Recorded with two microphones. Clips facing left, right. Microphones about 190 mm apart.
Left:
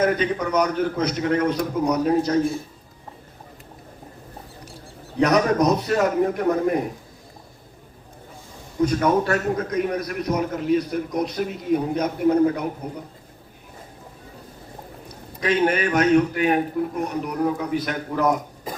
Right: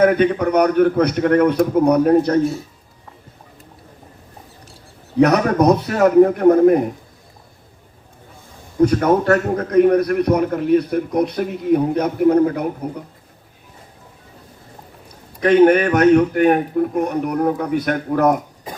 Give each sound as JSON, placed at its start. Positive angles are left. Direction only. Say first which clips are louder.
{"t": 0.0, "sound": "a man's voice", "louder": "right 7 dB", "side_deg": -60}
{"t": 5.2, "sound": "a man's voice", "louder": "right 4 dB", "side_deg": -60}
{"t": 8.8, "sound": "a man's voice", "louder": "right 5 dB", "side_deg": -55}
{"t": 15.4, "sound": "a man's voice", "louder": "right 9 dB", "side_deg": -55}